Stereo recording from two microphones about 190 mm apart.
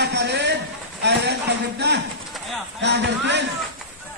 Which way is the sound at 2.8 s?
65° right (ahead or behind).